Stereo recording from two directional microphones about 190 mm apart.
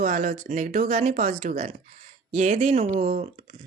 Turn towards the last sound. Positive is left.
turn(degrees=-35)  # may be behind; listen again after turning